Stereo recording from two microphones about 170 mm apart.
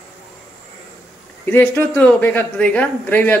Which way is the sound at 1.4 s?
10° left (ahead or behind).